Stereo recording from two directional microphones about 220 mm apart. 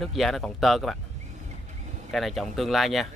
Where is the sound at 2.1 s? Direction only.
Centre (ahead or behind).